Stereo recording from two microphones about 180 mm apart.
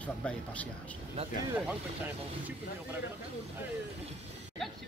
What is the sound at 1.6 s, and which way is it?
Speech, 5° right (ahead or behind).